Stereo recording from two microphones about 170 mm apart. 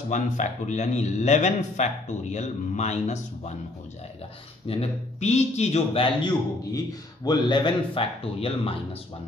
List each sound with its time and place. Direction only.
0.1 s speech: 45° left (ahead or behind)
4.6 s a man's voice: 40° left (ahead or behind)